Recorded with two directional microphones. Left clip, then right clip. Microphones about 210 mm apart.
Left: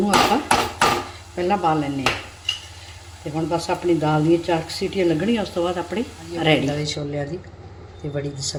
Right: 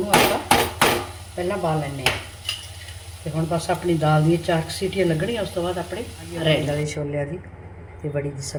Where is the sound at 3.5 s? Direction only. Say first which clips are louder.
Left 2 dB; 20° left (ahead or behind).